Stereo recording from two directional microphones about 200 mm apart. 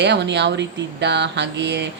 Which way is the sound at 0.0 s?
60° right (ahead or behind).